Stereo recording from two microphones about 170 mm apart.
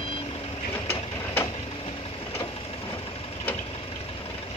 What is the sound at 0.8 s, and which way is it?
Printer, 15° left (ahead or behind).